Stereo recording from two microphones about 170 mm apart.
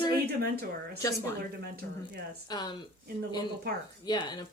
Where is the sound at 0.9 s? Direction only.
20° left (ahead or behind).